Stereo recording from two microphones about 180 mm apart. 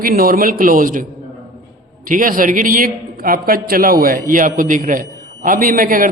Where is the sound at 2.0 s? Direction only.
50° right (ahead or behind).